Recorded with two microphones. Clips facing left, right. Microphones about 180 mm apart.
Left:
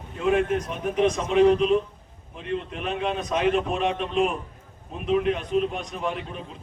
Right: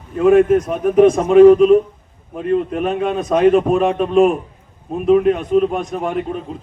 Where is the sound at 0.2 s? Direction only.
50° right (ahead or behind).